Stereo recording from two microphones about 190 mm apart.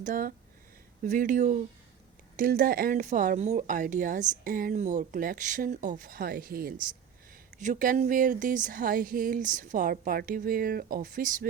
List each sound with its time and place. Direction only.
0.0 s speech: 45° right (ahead or behind)